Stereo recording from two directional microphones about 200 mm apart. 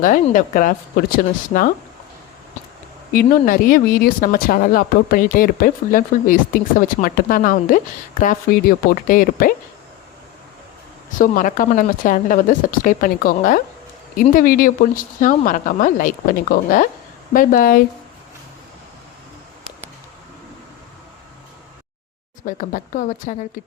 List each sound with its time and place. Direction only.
0.0 s speech: 40° left (ahead or behind)
3.1 s speech: 45° left (ahead or behind)
11.2 s speech: 40° left (ahead or behind)
22.4 s speech: 40° left (ahead or behind)